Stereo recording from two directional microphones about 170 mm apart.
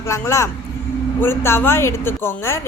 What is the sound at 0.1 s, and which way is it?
Speech, 15° left (ahead or behind).